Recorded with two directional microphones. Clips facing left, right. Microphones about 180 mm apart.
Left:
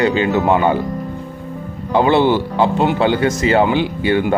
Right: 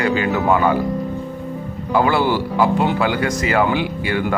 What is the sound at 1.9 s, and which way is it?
Speech, 25° left (ahead or behind).